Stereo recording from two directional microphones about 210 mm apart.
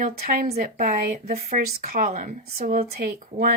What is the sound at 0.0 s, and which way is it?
Speech, 40° right (ahead or behind).